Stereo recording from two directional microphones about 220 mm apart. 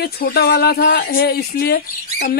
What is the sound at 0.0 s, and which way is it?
Speech, 45° left (ahead or behind).